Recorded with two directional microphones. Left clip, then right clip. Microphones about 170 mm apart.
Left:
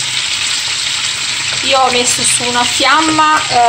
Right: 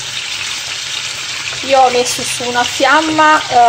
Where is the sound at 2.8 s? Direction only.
Centre (ahead or behind).